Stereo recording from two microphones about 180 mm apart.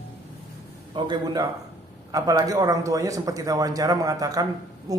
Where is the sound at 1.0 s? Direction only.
20° right (ahead or behind).